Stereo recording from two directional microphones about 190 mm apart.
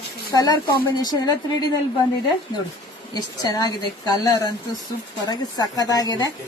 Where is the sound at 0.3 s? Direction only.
20° left (ahead or behind).